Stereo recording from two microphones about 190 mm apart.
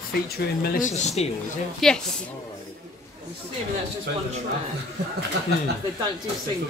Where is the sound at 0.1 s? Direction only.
55° left (ahead or behind); by 1.3 s 35° left (ahead or behind).